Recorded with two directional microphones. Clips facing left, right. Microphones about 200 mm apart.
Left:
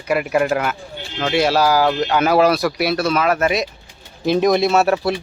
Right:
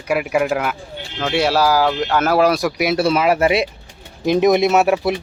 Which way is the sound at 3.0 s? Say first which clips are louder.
Right 4 dB; 30° right (ahead or behind).